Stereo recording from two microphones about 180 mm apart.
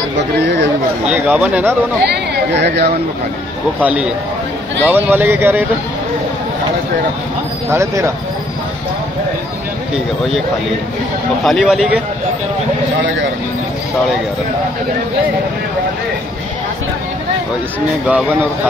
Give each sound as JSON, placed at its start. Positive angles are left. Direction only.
{"t": 0.4, "sound": "speech", "side_deg": -75}
{"t": 1.0, "sound": "speech", "side_deg": -10}
{"t": 2.0, "sound": "speech", "side_deg": -70}
{"t": 3.8, "sound": "speech", "side_deg": -5}
{"t": 7.7, "sound": "speech", "side_deg": -15}
{"t": 11.4, "sound": "speech", "side_deg": 0}
{"t": 18.0, "sound": "speech", "side_deg": -10}